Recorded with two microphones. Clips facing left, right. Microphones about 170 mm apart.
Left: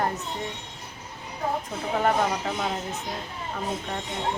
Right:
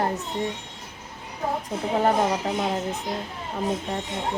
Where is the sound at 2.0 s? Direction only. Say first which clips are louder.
Right 2 dB; 20° right (ahead or behind).